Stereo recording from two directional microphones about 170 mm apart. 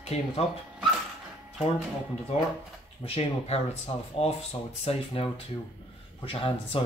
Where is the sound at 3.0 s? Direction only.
40° left (ahead or behind).